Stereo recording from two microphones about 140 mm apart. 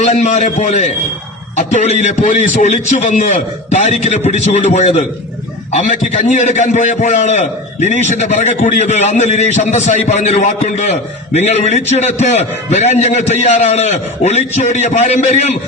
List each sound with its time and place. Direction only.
0.0 s a man's voice: 60° left (ahead or behind)
6.2 s a man's voice: 60° left (ahead or behind)